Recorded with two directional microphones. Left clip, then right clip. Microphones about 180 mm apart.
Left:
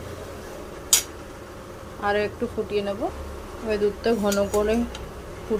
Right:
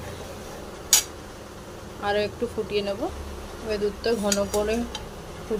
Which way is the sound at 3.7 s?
15° left (ahead or behind).